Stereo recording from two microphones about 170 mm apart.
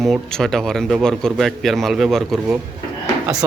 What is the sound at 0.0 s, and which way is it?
A man's voice, centre (ahead or behind).